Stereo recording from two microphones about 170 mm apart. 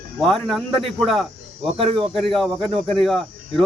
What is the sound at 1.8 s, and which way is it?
Speech, 35° right (ahead or behind).